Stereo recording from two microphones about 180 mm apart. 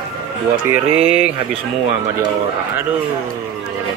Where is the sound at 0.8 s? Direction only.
35° right (ahead or behind).